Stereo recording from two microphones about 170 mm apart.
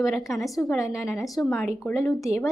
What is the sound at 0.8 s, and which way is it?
Speech, 20° left (ahead or behind).